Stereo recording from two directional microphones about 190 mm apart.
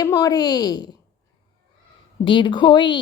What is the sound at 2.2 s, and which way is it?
Speech, 25° left (ahead or behind).